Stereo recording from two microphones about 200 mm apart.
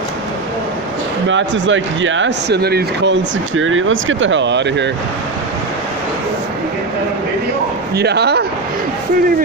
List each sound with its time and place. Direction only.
1.3 s speech: 65° right (ahead or behind)
7.9 s speech: 55° right (ahead or behind)